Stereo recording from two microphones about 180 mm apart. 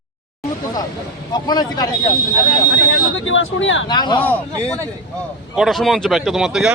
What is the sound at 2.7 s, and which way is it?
Speech, 90° left.